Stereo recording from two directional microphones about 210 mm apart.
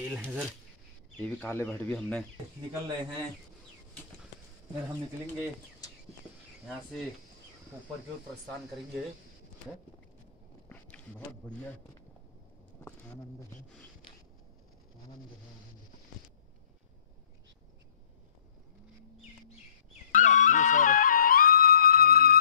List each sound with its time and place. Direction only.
0.1 s speech: 5° right (ahead or behind)
1.4 s speech: 10° left (ahead or behind)
10.7 s a sound: 10° left (ahead or behind)
20.2 s music: 35° left (ahead or behind)